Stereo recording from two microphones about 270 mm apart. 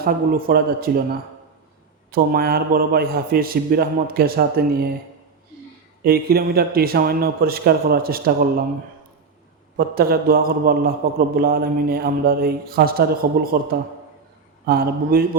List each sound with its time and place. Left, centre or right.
0.0 s a man's voice: right
2.0 s a man's voice: right
6.0 s a man's voice: right
9.7 s a man's voice: right
14.7 s a man's voice: right